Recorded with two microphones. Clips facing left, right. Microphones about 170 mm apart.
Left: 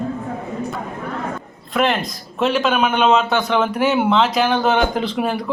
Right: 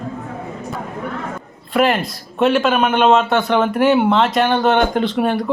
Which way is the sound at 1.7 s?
5° right (ahead or behind).